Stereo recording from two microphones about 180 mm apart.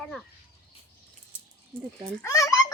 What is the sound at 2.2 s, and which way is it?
Speech, 20° left (ahead or behind).